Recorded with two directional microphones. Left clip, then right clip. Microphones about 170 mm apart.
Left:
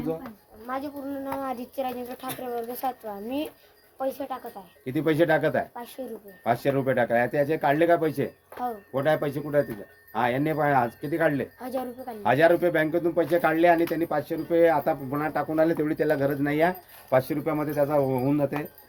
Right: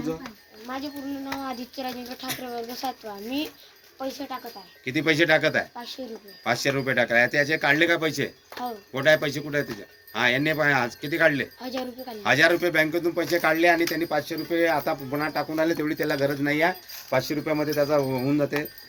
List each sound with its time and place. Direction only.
0.7 s speech: 20° right (ahead or behind)
1.2 s speech: centre (ahead or behind)
4.9 s speech: 35° left (ahead or behind)
11.6 s speech: 10° right (ahead or behind)
12.2 s speech: 45° left (ahead or behind); by 18.4 s 70° left (ahead or behind)